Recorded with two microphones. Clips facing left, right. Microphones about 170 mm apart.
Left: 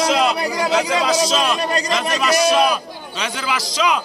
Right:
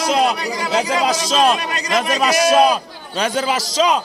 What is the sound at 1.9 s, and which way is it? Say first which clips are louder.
A man's voice: right 5 dB; 45° right (ahead or behind).